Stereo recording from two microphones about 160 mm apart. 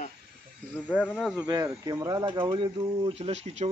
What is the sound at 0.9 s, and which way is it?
Speech, 10° left (ahead or behind).